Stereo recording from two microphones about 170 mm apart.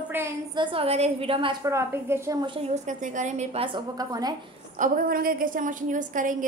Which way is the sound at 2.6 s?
45° right (ahead or behind).